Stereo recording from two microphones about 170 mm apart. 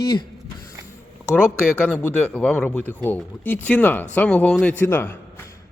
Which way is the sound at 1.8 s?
10° left (ahead or behind).